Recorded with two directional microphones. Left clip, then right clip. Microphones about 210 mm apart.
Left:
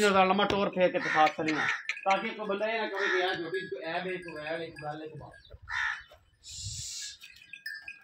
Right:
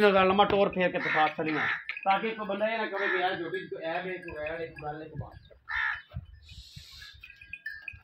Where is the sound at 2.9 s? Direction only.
45° right (ahead or behind).